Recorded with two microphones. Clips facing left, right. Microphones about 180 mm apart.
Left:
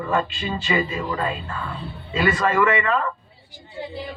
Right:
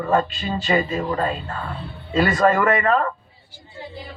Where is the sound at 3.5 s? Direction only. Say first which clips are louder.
Left 2 dB; 15° left (ahead or behind).